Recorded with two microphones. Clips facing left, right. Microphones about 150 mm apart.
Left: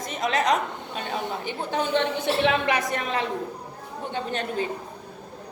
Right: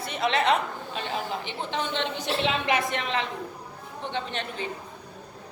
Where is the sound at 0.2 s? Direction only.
40° left (ahead or behind).